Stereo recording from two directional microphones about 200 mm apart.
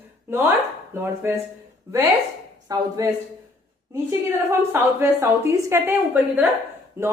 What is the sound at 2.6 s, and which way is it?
Speech, 15° right (ahead or behind).